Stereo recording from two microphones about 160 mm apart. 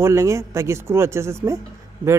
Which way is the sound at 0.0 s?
20° right (ahead or behind).